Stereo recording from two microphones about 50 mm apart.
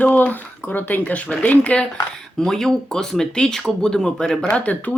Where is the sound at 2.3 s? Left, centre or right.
Centre.